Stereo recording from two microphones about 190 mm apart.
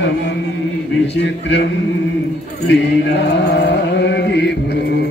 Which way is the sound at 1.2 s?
65° left (ahead or behind).